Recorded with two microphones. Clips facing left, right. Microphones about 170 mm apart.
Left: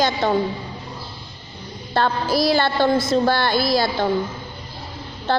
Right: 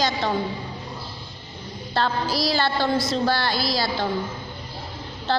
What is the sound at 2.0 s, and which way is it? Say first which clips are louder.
A woman's voice: left 4 dB; 50° left (ahead or behind).